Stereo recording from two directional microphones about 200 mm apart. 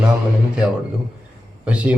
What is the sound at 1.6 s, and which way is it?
Speech, 5° right (ahead or behind).